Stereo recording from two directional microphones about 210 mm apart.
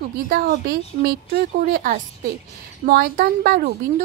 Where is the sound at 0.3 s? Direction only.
45° right (ahead or behind).